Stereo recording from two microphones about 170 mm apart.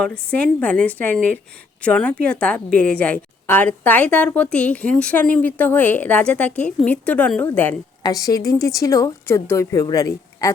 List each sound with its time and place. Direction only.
0.0 s a woman's voice: 5° left (ahead or behind)
8.0 s a woman's voice: 20° left (ahead or behind)